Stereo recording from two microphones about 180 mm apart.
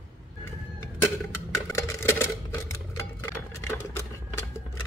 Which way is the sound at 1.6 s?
15° left (ahead or behind).